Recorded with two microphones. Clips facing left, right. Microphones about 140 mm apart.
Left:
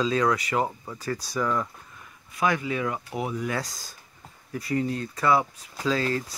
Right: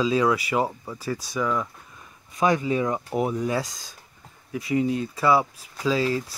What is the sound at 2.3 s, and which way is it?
Speech, 20° right (ahead or behind).